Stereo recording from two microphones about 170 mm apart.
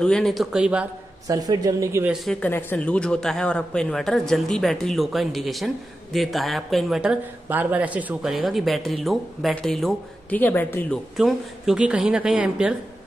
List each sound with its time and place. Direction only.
0.0 s speech: 5° left (ahead or behind)
1.2 s speech: 20° right (ahead or behind)
2.2 s speech: 10° left (ahead or behind)
11.1 s speech: 5° right (ahead or behind)